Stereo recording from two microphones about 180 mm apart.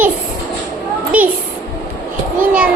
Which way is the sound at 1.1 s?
10° right (ahead or behind).